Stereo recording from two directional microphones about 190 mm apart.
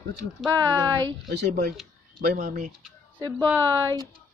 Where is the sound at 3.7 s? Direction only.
25° right (ahead or behind).